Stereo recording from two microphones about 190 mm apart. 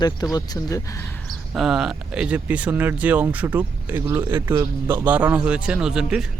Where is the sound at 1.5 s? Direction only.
Centre (ahead or behind).